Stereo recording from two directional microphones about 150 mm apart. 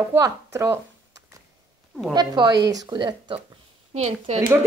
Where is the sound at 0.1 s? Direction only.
20° right (ahead or behind).